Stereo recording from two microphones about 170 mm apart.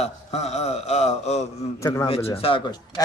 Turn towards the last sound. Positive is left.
turn(degrees=25)  # may be behind; listen again after turning